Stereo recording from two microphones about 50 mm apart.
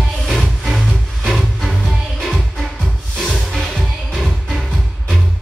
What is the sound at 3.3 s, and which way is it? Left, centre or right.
Music, centre.